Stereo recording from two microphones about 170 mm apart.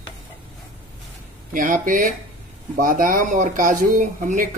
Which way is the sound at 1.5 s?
50° right (ahead or behind).